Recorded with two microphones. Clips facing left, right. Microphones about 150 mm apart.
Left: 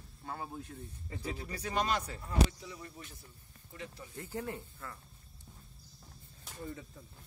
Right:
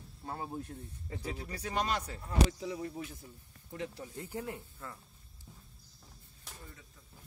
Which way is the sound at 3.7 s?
70° right (ahead or behind).